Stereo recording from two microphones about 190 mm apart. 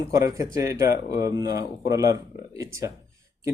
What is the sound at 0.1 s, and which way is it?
Speech, 15° right (ahead or behind).